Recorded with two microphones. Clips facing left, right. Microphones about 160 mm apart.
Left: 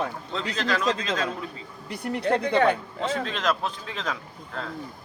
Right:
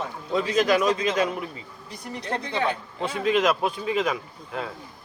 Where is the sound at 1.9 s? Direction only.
60° left (ahead or behind).